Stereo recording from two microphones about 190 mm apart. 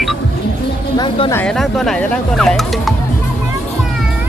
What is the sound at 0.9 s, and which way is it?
Speech, 25° left (ahead or behind).